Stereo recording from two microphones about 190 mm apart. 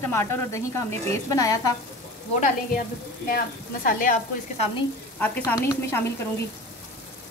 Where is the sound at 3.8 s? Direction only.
45° left (ahead or behind).